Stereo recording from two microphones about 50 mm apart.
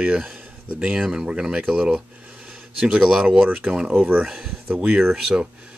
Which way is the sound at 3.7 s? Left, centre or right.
Centre.